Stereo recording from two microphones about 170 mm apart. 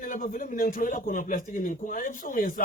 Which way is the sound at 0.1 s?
50° left (ahead or behind).